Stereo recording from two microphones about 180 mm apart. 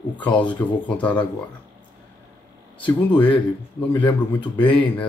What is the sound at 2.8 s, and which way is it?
Speech, 10° left (ahead or behind).